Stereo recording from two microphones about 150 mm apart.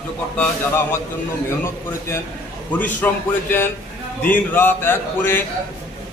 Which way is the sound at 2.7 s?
10° left (ahead or behind).